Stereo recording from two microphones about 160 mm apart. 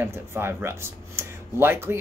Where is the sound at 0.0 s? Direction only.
15° right (ahead or behind).